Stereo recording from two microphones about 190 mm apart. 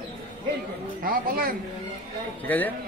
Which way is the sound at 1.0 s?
50° right (ahead or behind).